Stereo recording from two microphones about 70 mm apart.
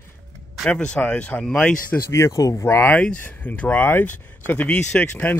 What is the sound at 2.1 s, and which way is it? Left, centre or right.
Speech, left.